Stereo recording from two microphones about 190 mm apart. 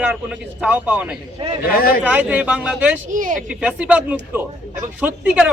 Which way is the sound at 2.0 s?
10° right (ahead or behind).